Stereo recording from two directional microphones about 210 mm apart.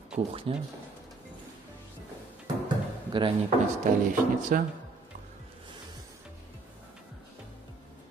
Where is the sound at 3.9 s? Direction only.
40° right (ahead or behind).